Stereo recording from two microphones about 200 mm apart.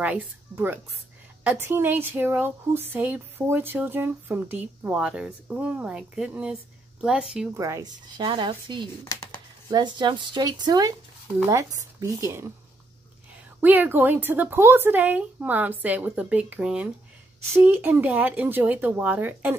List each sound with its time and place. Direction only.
0.0 s speech: 10° right (ahead or behind)
7.5 s a woman's voice: 15° right (ahead or behind)
13.6 s speech: 10° right (ahead or behind)